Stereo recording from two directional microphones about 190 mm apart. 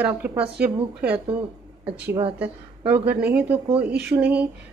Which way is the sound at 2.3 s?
10° right (ahead or behind).